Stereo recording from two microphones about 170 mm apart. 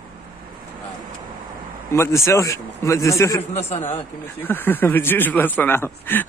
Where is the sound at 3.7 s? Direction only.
35° left (ahead or behind).